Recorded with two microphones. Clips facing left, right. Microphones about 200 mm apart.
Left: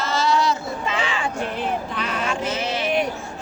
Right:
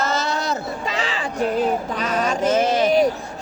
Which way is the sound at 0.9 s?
35° right (ahead or behind).